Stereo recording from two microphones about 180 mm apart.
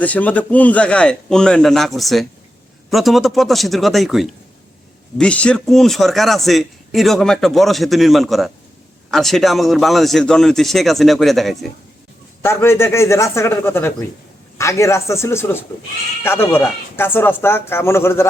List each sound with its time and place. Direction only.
0.0 s a man's voice: 10° left (ahead or behind)
12.4 s speech: 15° left (ahead or behind)